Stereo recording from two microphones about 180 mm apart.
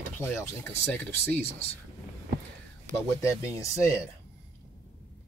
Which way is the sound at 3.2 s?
20° left (ahead or behind).